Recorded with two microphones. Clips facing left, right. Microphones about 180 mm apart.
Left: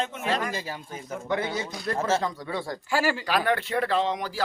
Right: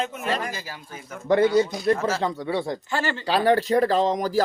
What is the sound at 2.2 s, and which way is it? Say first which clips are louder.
Speech: right 5 dB; 25° right (ahead or behind).